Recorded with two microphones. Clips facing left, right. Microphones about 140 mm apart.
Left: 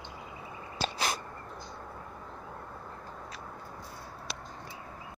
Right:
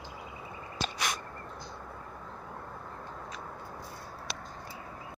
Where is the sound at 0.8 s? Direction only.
30° left (ahead or behind).